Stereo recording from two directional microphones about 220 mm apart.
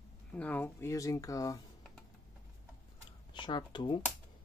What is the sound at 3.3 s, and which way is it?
Speech, 20° left (ahead or behind).